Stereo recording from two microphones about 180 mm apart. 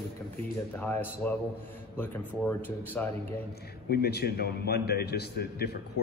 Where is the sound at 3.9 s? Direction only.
60° left (ahead or behind).